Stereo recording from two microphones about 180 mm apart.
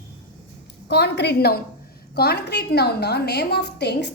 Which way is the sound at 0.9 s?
70° left (ahead or behind).